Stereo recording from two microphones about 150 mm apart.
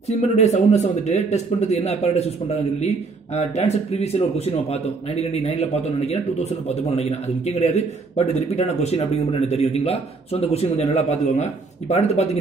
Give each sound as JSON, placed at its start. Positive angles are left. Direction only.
{"t": 0.1, "sound": "speech", "side_deg": 45}